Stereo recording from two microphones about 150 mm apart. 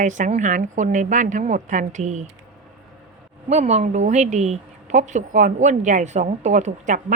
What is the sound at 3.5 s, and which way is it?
A woman's voice, 50° right (ahead or behind).